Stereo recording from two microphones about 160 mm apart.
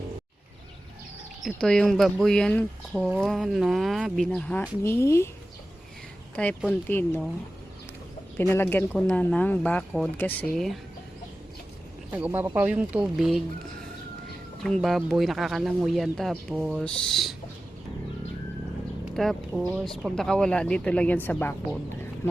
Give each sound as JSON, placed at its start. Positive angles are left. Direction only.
{"t": 1.5, "sound": "speech", "side_deg": 5}
{"t": 6.3, "sound": "speech", "side_deg": 10}
{"t": 8.4, "sound": "speech", "side_deg": 15}
{"t": 12.1, "sound": "speech", "side_deg": -10}
{"t": 14.6, "sound": "speech", "side_deg": 0}
{"t": 16.6, "sound": "speech", "side_deg": -5}
{"t": 16.8, "sound": "speech", "side_deg": 5}
{"t": 19.1, "sound": "speech", "side_deg": 0}